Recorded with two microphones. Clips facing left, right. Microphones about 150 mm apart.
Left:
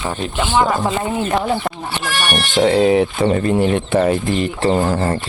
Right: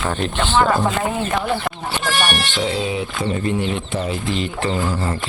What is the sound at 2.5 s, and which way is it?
Speech, 60° left (ahead or behind).